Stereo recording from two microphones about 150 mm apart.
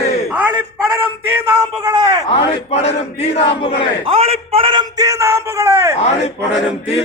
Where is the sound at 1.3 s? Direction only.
20° right (ahead or behind).